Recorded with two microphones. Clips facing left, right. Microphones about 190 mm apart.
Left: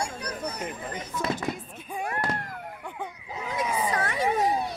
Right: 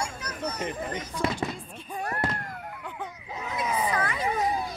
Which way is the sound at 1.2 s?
25° right (ahead or behind).